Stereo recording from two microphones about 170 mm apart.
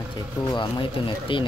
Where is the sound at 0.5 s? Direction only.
30° left (ahead or behind).